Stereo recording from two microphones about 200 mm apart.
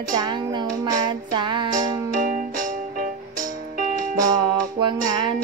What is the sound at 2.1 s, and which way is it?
Music, 40° right (ahead or behind).